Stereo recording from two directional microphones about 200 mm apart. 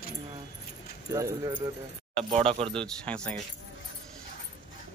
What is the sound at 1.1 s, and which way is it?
Speech, 20° right (ahead or behind).